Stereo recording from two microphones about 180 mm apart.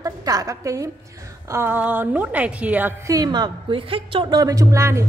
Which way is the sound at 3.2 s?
25° right (ahead or behind).